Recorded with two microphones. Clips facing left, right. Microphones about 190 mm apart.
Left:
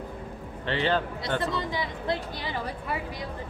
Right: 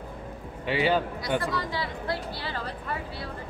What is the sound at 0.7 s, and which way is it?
Speech, 10° right (ahead or behind).